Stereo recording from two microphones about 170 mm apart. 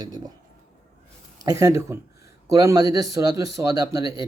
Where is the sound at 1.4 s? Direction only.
20° right (ahead or behind).